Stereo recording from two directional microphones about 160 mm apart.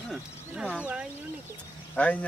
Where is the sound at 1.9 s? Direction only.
10° left (ahead or behind).